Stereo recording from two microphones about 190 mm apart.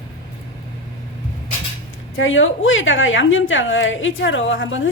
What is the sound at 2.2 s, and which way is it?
A woman's voice, 90° left.